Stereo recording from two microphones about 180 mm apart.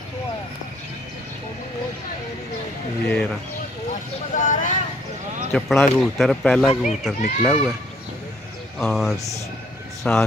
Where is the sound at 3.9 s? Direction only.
45° left (ahead or behind).